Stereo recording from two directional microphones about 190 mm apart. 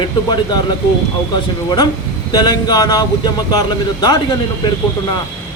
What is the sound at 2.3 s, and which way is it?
Speech, 20° left (ahead or behind).